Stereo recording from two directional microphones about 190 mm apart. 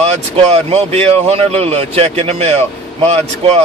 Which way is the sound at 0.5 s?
35° right (ahead or behind).